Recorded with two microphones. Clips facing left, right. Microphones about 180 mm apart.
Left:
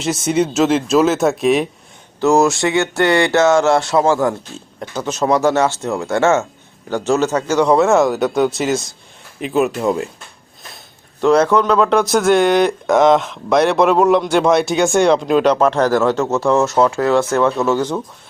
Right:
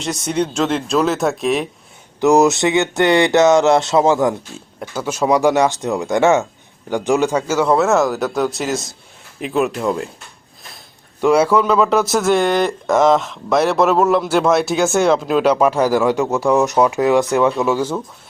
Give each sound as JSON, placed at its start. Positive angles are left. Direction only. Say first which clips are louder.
{"t": 0.0, "sound": "speech", "louder": "left 3 dB", "side_deg": 5}
{"t": 2.2, "sound": "speech", "louder": "right 1 dB", "side_deg": -20}
{"t": 11.2, "sound": "speech", "louder": "left 1 dB", "side_deg": -10}